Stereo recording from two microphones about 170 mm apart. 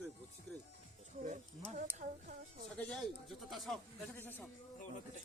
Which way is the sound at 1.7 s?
50° right (ahead or behind).